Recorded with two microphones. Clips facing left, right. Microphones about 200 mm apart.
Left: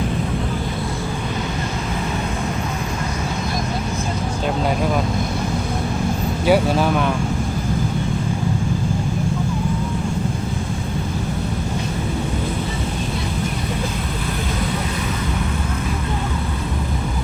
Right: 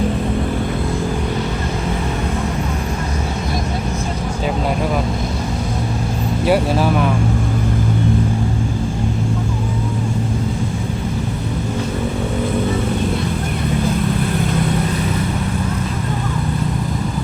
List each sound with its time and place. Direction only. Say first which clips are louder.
6.4 s speech: even; centre (ahead or behind)